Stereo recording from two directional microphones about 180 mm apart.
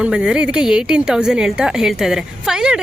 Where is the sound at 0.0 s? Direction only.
5° right (ahead or behind).